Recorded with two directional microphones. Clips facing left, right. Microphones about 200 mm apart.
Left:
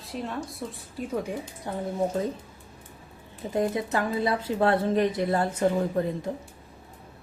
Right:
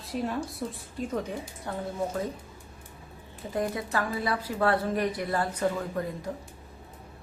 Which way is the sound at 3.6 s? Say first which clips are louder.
Left 3 dB; 20° left (ahead or behind).